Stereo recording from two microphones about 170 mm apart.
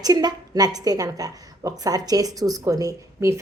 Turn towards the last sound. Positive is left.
turn(degrees=-20)  # may be behind; listen again after turning